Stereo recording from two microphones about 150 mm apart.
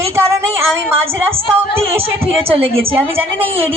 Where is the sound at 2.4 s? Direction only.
40° right (ahead or behind).